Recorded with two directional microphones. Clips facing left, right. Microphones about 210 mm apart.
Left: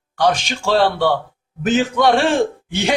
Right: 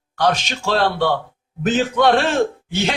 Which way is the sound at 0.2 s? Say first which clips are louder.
Left 2 dB; 10° left (ahead or behind).